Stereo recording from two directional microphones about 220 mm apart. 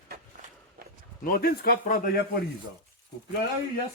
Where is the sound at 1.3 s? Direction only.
40° left (ahead or behind).